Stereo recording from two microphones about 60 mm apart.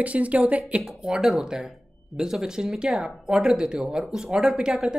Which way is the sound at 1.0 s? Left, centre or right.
Centre.